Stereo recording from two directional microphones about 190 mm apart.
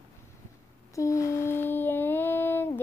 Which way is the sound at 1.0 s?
15° left (ahead or behind).